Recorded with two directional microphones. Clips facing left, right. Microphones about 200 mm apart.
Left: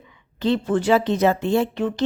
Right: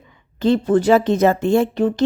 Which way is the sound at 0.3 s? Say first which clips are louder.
Right 5 dB; 45° right (ahead or behind).